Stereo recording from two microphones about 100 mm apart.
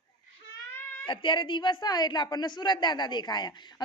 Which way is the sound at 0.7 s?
25° left (ahead or behind).